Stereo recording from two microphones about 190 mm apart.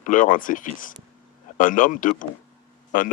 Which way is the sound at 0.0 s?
45° left (ahead or behind).